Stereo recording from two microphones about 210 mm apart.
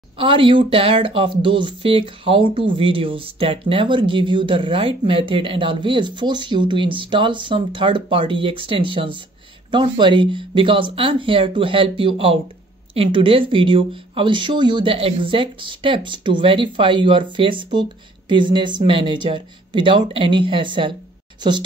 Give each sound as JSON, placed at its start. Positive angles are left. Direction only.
{"t": 0.2, "sound": "speech", "side_deg": -25}